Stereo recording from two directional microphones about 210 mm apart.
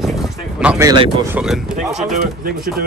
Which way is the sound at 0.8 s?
25° right (ahead or behind).